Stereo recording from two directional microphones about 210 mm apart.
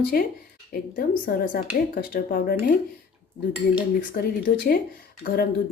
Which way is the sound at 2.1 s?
45° left (ahead or behind).